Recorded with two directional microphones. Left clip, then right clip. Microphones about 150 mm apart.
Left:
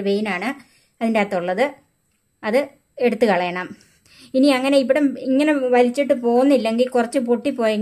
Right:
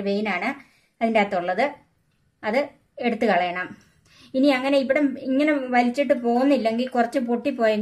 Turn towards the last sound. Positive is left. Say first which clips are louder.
# left 2 dB
turn(degrees=40)  # may be behind; listen again after turning